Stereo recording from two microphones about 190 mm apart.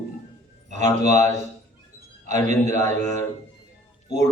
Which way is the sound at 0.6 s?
40° right (ahead or behind).